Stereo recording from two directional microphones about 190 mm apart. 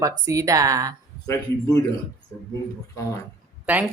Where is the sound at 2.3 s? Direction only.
15° left (ahead or behind).